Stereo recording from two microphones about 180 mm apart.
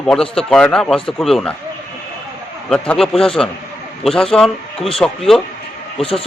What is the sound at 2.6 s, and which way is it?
A man's voice, 5° left (ahead or behind).